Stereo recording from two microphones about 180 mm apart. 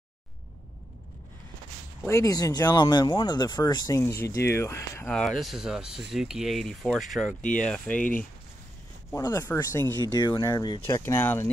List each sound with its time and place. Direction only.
2.0 s speech: 15° left (ahead or behind)
9.1 s speech: 15° left (ahead or behind)